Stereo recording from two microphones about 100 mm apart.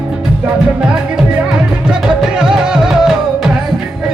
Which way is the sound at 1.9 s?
10° right (ahead or behind).